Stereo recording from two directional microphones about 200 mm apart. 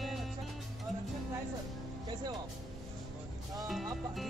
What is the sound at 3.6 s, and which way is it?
Music, centre (ahead or behind).